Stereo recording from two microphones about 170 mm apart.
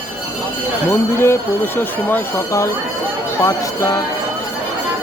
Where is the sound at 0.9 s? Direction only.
15° left (ahead or behind).